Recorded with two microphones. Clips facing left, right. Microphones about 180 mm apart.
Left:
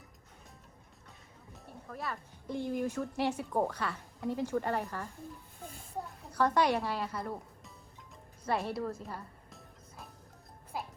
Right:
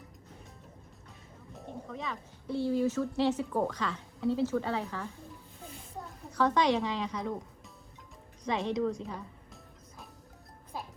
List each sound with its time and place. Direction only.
1.9 s a woman's voice: 5° left (ahead or behind)
6.3 s a woman's voice: 10° left (ahead or behind)